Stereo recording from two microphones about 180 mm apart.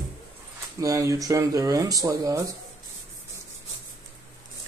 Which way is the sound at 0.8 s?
20° right (ahead or behind).